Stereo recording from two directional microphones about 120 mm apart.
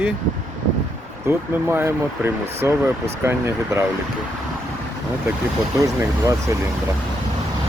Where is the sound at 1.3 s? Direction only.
20° right (ahead or behind).